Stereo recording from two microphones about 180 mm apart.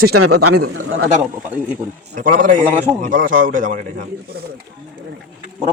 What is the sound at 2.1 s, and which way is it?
Speech, 45° right (ahead or behind).